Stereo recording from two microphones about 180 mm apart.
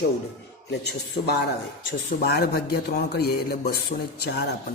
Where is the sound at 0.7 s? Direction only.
65° left (ahead or behind).